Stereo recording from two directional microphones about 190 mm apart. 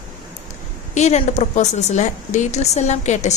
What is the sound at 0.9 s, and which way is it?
A woman's voice, 35° left (ahead or behind).